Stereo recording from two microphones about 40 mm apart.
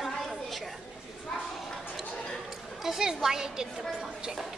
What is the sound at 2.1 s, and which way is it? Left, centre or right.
Chatter, centre.